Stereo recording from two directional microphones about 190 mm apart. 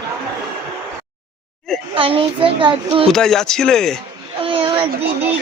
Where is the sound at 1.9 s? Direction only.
30° right (ahead or behind).